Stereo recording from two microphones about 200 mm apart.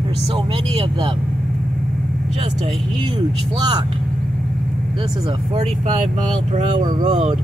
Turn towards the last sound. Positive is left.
turn(degrees=-25)  # may be behind; listen again after turning